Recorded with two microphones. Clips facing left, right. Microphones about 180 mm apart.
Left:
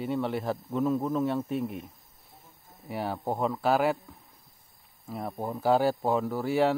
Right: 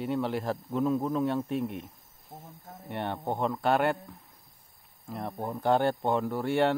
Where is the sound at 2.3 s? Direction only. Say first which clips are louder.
Right 11 dB; 90° right.